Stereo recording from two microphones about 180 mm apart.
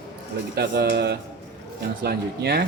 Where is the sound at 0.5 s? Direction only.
65° right (ahead or behind).